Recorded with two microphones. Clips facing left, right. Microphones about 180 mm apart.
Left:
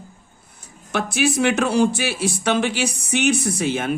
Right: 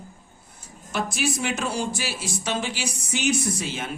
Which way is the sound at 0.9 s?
65° left (ahead or behind).